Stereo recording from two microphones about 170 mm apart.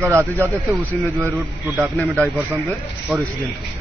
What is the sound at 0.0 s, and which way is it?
A man's voice, 15° right (ahead or behind).